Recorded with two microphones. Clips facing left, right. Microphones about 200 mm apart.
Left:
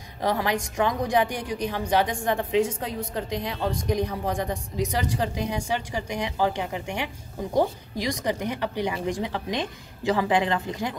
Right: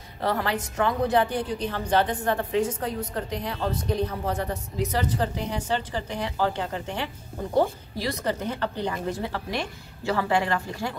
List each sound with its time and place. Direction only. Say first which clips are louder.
0.2 s a woman's voice: left 1 dB; 15° left (ahead or behind)